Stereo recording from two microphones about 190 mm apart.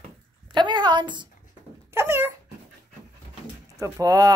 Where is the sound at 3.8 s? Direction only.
20° right (ahead or behind).